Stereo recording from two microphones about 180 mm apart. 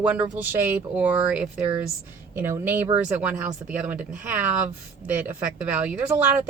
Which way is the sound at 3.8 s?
10° right (ahead or behind).